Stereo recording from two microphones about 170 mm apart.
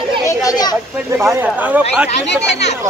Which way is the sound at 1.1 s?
10° right (ahead or behind).